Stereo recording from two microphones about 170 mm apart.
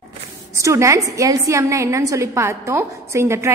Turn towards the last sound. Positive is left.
turn(degrees=-15)  # may be behind; listen again after turning